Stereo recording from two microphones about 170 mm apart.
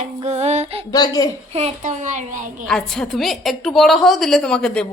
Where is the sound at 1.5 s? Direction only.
35° right (ahead or behind).